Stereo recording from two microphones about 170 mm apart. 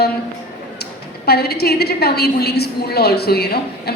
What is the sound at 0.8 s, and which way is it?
A woman's voice, 70° left (ahead or behind).